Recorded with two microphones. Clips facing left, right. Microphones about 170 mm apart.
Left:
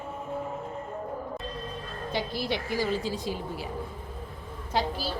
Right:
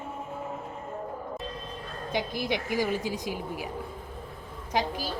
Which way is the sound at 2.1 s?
15° right (ahead or behind).